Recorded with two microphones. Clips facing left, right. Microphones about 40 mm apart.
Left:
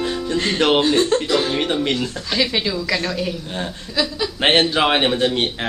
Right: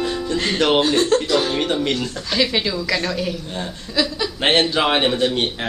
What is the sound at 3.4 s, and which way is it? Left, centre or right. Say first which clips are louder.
Speech: left 1 dB; left.